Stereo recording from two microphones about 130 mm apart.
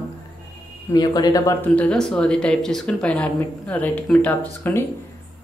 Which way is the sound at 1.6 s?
10° left (ahead or behind).